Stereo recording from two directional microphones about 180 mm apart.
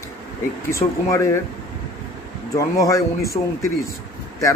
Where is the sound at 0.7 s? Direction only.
15° left (ahead or behind).